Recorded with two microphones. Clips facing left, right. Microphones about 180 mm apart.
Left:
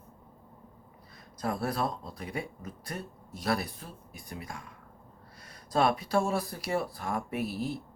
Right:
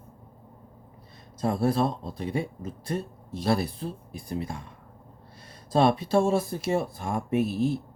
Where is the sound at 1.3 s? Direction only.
25° right (ahead or behind).